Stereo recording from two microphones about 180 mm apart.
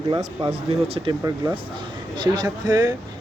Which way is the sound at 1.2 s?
20° right (ahead or behind).